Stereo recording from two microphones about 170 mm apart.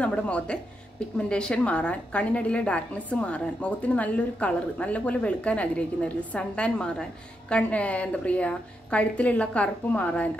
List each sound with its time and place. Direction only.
0.0 s a woman's voice: 5° left (ahead or behind)